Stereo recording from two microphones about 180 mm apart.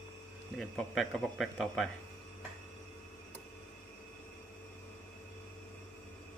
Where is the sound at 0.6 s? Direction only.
Centre (ahead or behind).